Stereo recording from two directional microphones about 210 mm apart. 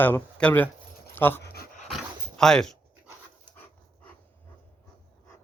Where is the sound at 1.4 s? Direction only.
45° left (ahead or behind).